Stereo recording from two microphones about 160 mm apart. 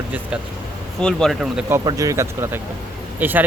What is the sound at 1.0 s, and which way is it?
Speech, 5° left (ahead or behind).